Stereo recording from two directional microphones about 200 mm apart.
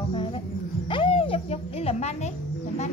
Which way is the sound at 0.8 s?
25° left (ahead or behind).